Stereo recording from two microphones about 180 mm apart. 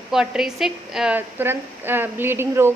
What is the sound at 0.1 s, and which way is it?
A woman's voice, 5° right (ahead or behind).